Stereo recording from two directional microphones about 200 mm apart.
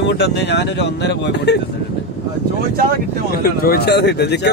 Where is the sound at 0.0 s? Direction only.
60° left (ahead or behind).